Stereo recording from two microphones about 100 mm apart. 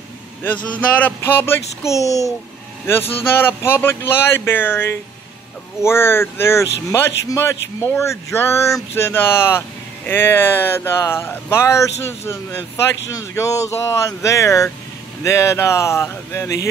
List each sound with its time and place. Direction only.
0.4 s speech: 15° left (ahead or behind); by 2.3 s 35° left (ahead or behind)
3.2 s speech: 20° left (ahead or behind)